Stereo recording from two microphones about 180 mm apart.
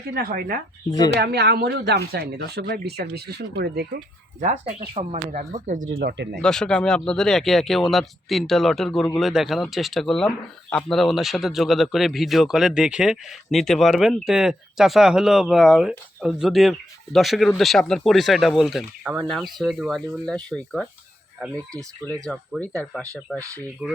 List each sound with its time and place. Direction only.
0.1 s speech: 55° right (ahead or behind)
0.9 s speech: 20° left (ahead or behind)
1.1 s speech: 65° right (ahead or behind)
4.4 s speech: 45° right (ahead or behind)
5.9 s speech: 60° right (ahead or behind)
6.4 s speech: 5° left (ahead or behind)
22.3 s speech: 5° left (ahead or behind)
23.8 s speech: 10° right (ahead or behind)